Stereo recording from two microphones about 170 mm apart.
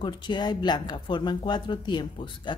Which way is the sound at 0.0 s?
25° left (ahead or behind).